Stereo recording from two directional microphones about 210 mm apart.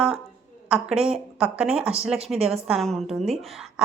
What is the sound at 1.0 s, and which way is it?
A woman's voice, 5° right (ahead or behind).